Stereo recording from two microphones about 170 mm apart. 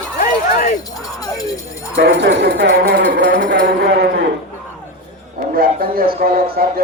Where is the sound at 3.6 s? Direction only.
75° right (ahead or behind).